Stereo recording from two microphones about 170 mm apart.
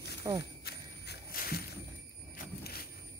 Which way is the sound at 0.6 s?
70° left (ahead or behind).